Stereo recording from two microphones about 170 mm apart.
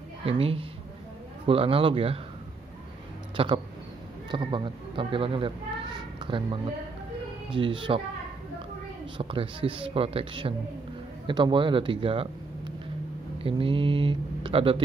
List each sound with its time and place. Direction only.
0.2 s speech: 35° right (ahead or behind)
3.3 s speech: 30° right (ahead or behind)
5.9 s a sound: 30° right (ahead or behind)
7.5 s speech: 30° right (ahead or behind)
9.2 s speech: 35° right (ahead or behind)